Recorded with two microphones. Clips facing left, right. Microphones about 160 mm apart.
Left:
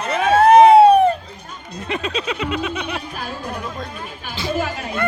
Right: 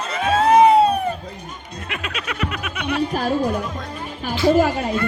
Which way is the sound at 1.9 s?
30° left (ahead or behind).